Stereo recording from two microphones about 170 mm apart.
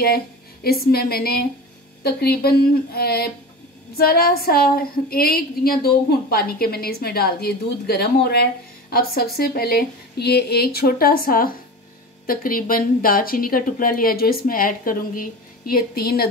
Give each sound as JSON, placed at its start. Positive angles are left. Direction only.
{"t": 0.7, "sound": "a woman's voice", "side_deg": 65}